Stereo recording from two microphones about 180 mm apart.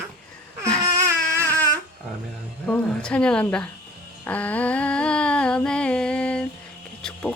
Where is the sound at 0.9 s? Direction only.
15° right (ahead or behind).